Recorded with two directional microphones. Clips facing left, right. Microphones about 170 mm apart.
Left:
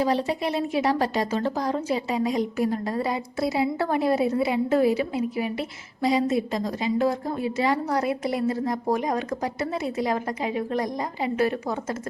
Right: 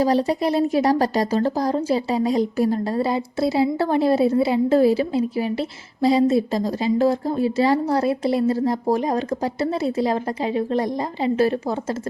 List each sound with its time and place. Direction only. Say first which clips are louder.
0.0 s a woman's voice: right 5 dB; 40° right (ahead or behind)